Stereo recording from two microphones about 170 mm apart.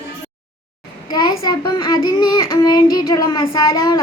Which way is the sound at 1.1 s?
25° left (ahead or behind).